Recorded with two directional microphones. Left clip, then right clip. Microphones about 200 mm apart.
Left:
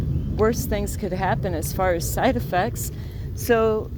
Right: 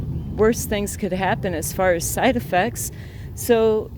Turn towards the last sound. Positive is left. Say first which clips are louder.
# right 2 dB
turn(degrees=-35)  # may be behind; listen again after turning